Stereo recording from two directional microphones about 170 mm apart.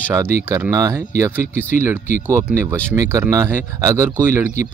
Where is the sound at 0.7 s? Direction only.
20° right (ahead or behind).